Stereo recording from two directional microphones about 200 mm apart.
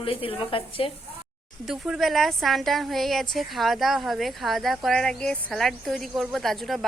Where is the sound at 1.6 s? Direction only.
5° right (ahead or behind).